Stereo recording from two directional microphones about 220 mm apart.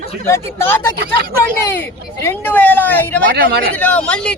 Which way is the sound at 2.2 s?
10° left (ahead or behind).